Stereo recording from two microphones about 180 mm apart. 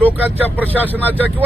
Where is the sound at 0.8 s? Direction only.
10° right (ahead or behind).